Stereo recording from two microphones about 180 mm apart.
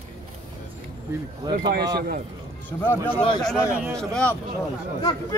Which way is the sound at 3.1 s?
30° left (ahead or behind).